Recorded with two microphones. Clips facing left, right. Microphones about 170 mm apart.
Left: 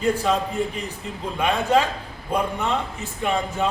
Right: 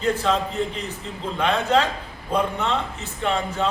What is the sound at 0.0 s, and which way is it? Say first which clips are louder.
A man's voice: left 1 dB; 10° left (ahead or behind).